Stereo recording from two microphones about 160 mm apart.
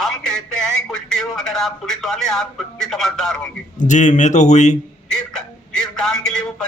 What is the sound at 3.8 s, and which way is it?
Speech, 50° left (ahead or behind).